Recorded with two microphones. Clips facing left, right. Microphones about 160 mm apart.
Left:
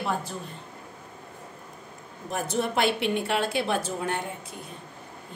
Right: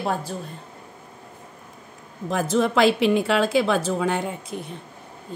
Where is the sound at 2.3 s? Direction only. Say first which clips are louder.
Right 7 dB; 90° right.